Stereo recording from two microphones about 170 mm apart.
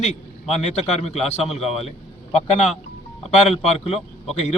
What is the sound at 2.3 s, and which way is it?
A man's voice, 40° left (ahead or behind).